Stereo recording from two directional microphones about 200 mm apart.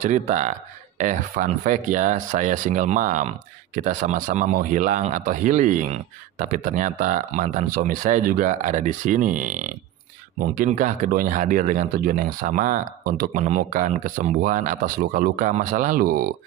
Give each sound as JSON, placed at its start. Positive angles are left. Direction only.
{"t": 0.0, "sound": "speech", "side_deg": -35}